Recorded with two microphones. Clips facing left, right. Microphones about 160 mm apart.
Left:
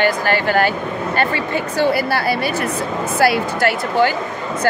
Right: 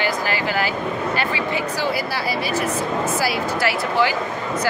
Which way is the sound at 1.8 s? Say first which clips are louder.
Left 6 dB; 60° left (ahead or behind).